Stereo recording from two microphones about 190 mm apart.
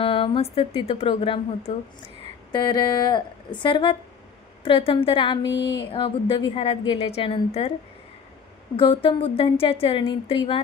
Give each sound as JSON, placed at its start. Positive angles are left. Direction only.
{"t": 0.0, "sound": "a woman's voice", "side_deg": 30}
{"t": 5.4, "sound": "a sound", "side_deg": 65}
{"t": 5.9, "sound": "a woman's voice", "side_deg": 25}
{"t": 8.7, "sound": "a woman's voice", "side_deg": 25}